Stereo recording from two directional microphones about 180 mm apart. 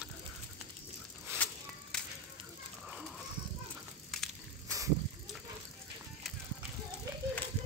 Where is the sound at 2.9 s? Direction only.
5° right (ahead or behind).